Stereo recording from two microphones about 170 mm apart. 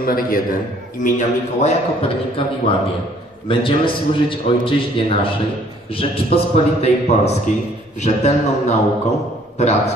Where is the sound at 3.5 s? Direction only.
30° left (ahead or behind).